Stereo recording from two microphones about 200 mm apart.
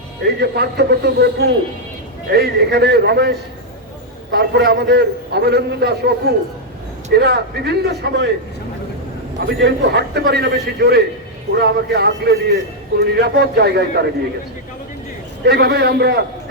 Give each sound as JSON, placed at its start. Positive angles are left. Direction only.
{"t": 0.3, "sound": "a man's voice", "side_deg": -55}
{"t": 9.6, "sound": "a man's voice", "side_deg": -55}
{"t": 15.4, "sound": "a man's voice", "side_deg": -55}